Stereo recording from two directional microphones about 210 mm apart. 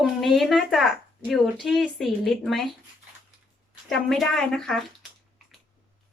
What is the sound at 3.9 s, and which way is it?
Speech, centre (ahead or behind).